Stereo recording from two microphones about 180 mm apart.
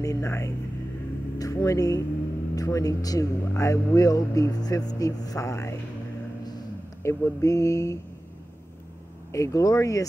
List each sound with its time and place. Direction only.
0.0 s speech: 15° left (ahead or behind)
7.0 s speech: 15° left (ahead or behind)
9.3 s speech: 15° left (ahead or behind)